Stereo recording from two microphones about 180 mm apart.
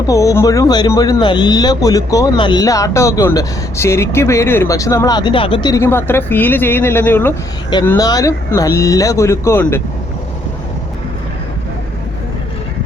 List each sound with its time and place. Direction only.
0.1 s speech: 15° left (ahead or behind)
5.8 s speech: 15° left (ahead or behind)